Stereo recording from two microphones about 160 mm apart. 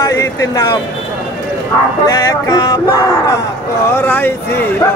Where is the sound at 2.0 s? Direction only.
25° left (ahead or behind).